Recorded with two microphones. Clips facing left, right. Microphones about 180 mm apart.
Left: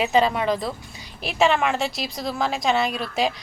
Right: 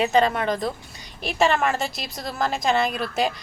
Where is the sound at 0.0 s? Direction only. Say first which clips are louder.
Even; centre (ahead or behind).